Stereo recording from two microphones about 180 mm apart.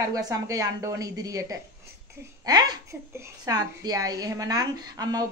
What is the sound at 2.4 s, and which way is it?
A woman's voice, 25° right (ahead or behind).